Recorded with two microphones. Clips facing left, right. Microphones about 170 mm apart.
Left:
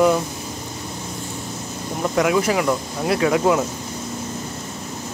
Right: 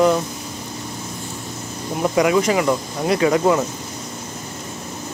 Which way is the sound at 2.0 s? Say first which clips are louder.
Right 2 dB; centre (ahead or behind).